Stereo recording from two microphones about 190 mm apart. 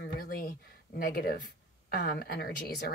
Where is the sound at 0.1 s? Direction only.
55° left (ahead or behind).